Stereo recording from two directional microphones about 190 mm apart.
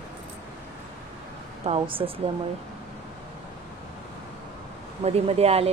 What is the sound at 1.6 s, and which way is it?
Speech, 30° right (ahead or behind).